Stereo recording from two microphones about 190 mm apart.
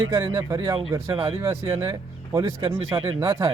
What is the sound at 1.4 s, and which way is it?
Speech, 15° right (ahead or behind).